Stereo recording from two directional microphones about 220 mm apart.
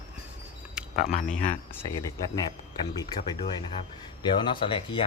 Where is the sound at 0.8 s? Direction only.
5° right (ahead or behind).